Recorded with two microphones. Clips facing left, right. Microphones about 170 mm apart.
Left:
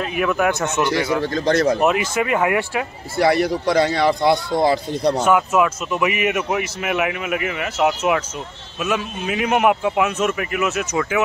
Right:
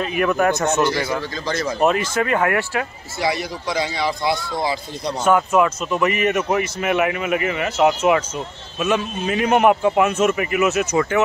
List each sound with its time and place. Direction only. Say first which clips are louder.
0.0 s speech: right 1 dB; centre (ahead or behind)
1.2 s speech: left 7 dB; 65° left (ahead or behind)
1.8 s speech: even; 5° left (ahead or behind)
3.2 s speech: left 6 dB; 60° left (ahead or behind)
5.2 s speech: right 4 dB; 5° left (ahead or behind)